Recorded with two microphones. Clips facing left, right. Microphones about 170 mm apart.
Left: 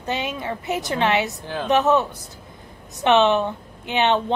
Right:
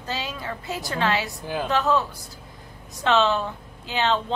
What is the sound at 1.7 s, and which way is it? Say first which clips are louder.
A woman's voice: left 6 dB; 20° left (ahead or behind).